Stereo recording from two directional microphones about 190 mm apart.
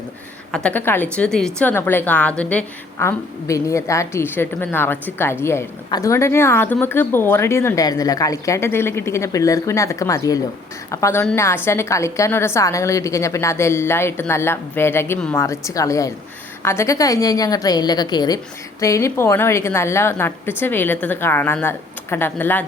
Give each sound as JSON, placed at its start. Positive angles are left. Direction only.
{"t": 0.5, "sound": "a woman's voice", "side_deg": 5}